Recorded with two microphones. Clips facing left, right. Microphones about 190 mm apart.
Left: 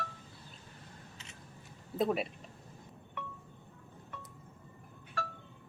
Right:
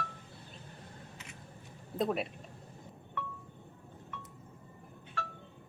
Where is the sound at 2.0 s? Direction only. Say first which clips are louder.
Left 1 dB; centre (ahead or behind).